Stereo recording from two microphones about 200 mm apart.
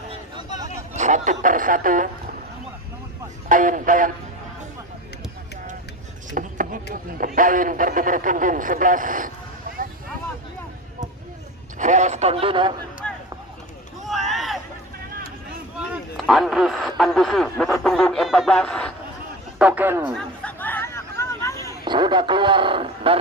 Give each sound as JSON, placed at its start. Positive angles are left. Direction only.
{"t": 0.1, "sound": "a sound", "side_deg": -20}
{"t": 0.9, "sound": "speech", "side_deg": -35}
{"t": 3.4, "sound": "speech", "side_deg": -40}
{"t": 6.3, "sound": "speech", "side_deg": -40}
{"t": 9.7, "sound": "a sound", "side_deg": -45}
{"t": 11.8, "sound": "speech", "side_deg": -35}
{"t": 13.0, "sound": "a sound", "side_deg": 5}
{"t": 15.9, "sound": "speech", "side_deg": 0}
{"t": 19.6, "sound": "a man's voice", "side_deg": -10}
{"t": 20.2, "sound": "chatter", "side_deg": 5}
{"t": 21.8, "sound": "a man's voice", "side_deg": -25}